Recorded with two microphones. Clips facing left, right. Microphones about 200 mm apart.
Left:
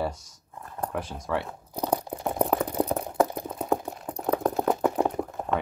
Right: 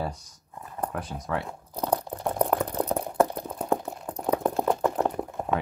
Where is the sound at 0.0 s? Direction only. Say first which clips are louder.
Left 2 dB; centre (ahead or behind).